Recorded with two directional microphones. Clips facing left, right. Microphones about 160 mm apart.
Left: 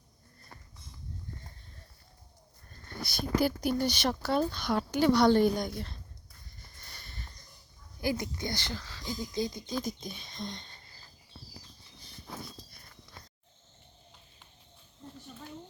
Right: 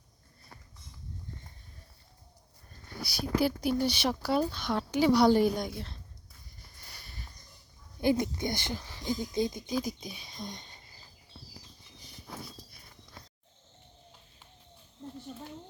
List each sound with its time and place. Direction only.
3.4 s speech: centre (ahead or behind)
6.7 s a sound: 10° right (ahead or behind)
8.0 s speech: 25° right (ahead or behind)